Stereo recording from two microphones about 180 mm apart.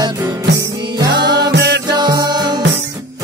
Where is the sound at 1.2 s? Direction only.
25° right (ahead or behind).